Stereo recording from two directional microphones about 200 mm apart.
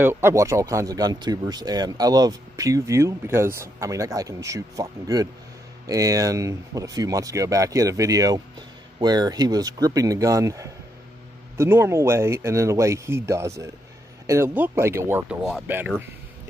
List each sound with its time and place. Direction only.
0.0 s speech: 10° right (ahead or behind)